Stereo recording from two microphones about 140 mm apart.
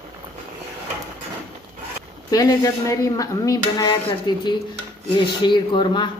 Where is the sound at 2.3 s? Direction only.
25° left (ahead or behind).